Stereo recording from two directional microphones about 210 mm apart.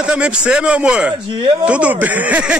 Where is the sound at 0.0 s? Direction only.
5° right (ahead or behind).